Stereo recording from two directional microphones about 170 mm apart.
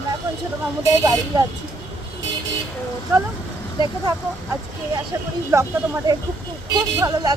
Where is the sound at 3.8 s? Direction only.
25° left (ahead or behind).